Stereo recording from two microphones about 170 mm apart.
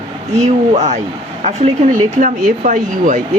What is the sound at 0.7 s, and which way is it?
Speech, 40° right (ahead or behind).